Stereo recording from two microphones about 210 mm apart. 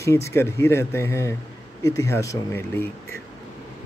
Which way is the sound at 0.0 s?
15° left (ahead or behind).